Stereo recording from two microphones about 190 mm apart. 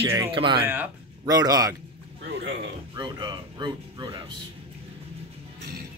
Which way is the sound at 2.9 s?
25° right (ahead or behind).